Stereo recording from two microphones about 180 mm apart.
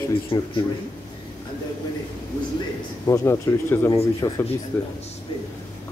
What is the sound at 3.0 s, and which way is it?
Speech, 15° left (ahead or behind).